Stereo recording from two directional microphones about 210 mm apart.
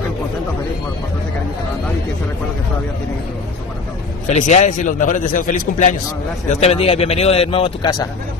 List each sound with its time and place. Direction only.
4.3 s a man's voice: 35° left (ahead or behind)